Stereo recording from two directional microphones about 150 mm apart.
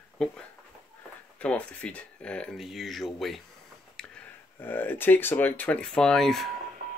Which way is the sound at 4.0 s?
5° left (ahead or behind).